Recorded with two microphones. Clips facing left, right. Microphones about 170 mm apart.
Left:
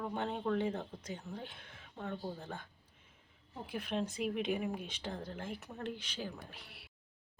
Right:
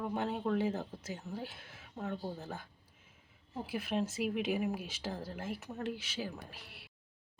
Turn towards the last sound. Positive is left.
turn(degrees=0)  # may be behind; listen again after turning